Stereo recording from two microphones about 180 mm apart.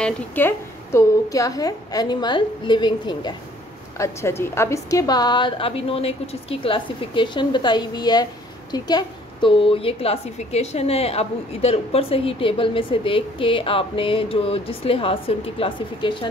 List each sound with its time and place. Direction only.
0.0 s a woman's voice: 10° left (ahead or behind)
4.0 s a woman's voice: 15° left (ahead or behind); by 16.3 s 30° left (ahead or behind)